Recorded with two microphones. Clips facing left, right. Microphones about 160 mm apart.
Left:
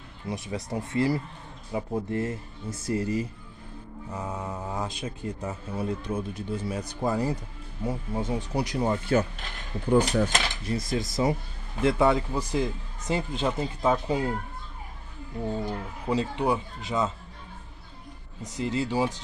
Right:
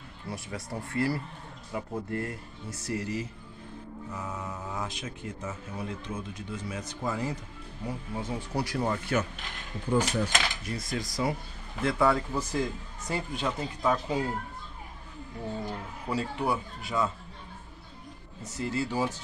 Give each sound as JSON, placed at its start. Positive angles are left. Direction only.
{"t": 0.3, "sound": "speech", "side_deg": 20}
{"t": 7.8, "sound": "speech", "side_deg": 25}
{"t": 9.8, "sound": "speech", "side_deg": 60}
{"t": 10.9, "sound": "speech", "side_deg": 25}
{"t": 15.6, "sound": "speech", "side_deg": 20}
{"t": 18.4, "sound": "speech", "side_deg": 20}